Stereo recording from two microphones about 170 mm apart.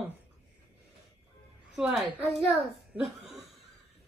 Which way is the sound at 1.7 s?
Centre (ahead or behind).